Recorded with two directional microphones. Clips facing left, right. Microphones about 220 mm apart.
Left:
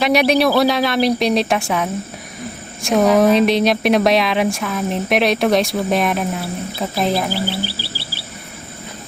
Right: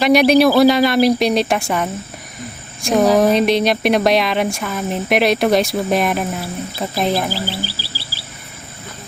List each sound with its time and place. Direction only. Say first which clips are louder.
0.0 s speech: right 3 dB; centre (ahead or behind)
7.5 s cricket: left 2 dB; 60° left (ahead or behind)